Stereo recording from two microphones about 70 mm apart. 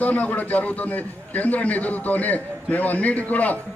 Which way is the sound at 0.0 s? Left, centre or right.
Left.